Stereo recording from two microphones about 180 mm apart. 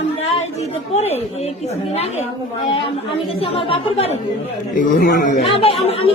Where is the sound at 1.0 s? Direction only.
35° left (ahead or behind).